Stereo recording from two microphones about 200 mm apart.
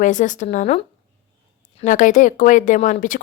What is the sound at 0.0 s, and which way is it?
Speech, 40° left (ahead or behind).